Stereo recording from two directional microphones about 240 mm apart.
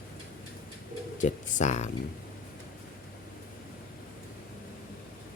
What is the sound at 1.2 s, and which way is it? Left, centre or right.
Speech, left.